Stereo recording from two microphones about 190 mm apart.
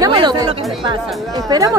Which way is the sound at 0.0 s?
25° right (ahead or behind).